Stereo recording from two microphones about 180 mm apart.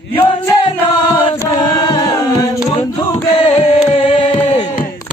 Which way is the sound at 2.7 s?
30° left (ahead or behind).